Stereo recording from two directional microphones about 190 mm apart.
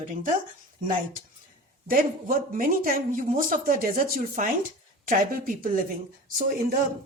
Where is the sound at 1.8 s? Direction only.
45° right (ahead or behind).